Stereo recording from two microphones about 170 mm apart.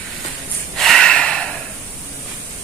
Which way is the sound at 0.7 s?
Centre (ahead or behind).